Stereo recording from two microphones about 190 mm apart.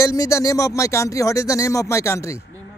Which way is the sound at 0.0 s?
15° left (ahead or behind).